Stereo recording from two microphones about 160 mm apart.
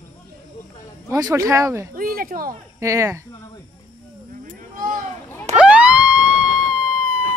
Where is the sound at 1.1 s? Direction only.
20° right (ahead or behind).